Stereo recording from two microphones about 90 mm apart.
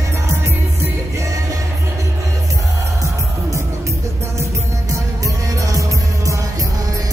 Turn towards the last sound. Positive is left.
turn(degrees=-35)  # may be behind; listen again after turning